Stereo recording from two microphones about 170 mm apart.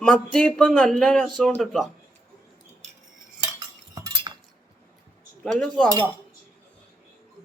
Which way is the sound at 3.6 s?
20° right (ahead or behind).